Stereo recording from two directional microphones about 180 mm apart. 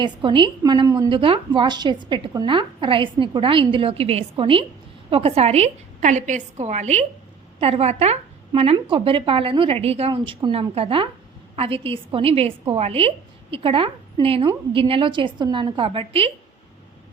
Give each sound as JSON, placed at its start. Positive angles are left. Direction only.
{"t": 0.0, "sound": "a woman's voice", "side_deg": -25}